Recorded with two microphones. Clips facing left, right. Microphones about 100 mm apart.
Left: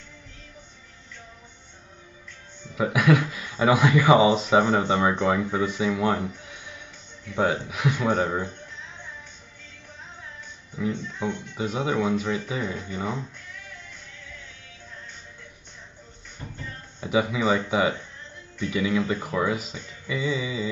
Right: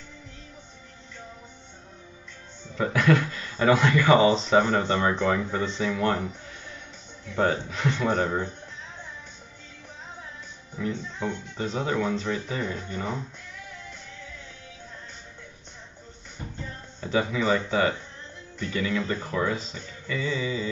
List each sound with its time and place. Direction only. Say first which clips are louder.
2.7 s speech: left 1 dB; 10° left (ahead or behind)
7.3 s speech: even; 10° left (ahead or behind)
10.8 s speech: left 2 dB; 10° left (ahead or behind)
17.0 s speech: left 2 dB; 10° left (ahead or behind)